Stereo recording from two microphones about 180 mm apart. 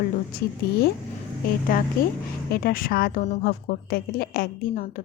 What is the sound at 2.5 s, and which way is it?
A woman's voice, 55° left (ahead or behind).